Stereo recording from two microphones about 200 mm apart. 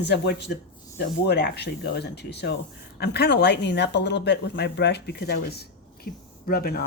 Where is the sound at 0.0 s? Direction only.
55° left (ahead or behind).